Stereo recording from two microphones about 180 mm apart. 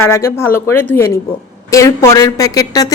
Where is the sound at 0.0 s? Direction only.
15° left (ahead or behind).